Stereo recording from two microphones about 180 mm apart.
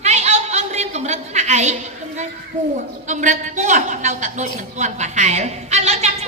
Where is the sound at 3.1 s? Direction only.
45° right (ahead or behind).